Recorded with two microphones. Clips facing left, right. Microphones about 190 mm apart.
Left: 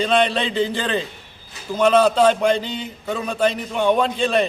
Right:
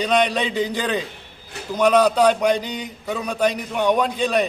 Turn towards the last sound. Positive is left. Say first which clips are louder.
# left 1 dB
turn(degrees=-10)  # may be behind; listen again after turning